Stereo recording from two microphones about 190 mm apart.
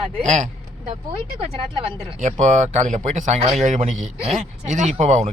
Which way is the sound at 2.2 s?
40° right (ahead or behind).